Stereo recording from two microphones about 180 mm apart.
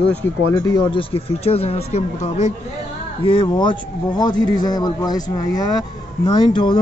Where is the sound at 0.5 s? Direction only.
20° left (ahead or behind).